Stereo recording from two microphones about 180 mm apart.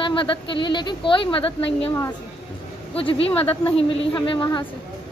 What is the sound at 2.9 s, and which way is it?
A woman's voice, 30° left (ahead or behind).